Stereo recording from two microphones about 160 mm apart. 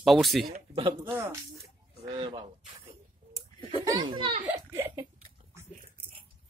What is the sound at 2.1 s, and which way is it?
A child's voice, 30° right (ahead or behind).